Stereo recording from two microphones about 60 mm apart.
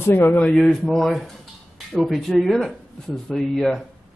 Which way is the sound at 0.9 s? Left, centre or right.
Centre.